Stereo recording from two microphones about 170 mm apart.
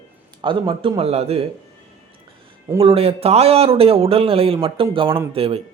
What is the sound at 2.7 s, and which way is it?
Speech, 35° right (ahead or behind).